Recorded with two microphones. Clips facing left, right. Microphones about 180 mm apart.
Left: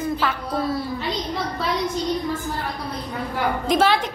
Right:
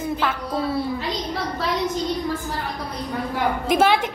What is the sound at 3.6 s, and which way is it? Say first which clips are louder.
Speech: right 1 dB; 10° right (ahead or behind).